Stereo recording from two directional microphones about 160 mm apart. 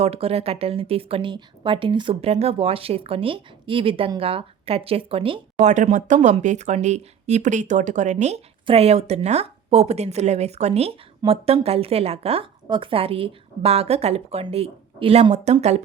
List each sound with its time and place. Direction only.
0.0 s a woman's voice: 40° right (ahead or behind)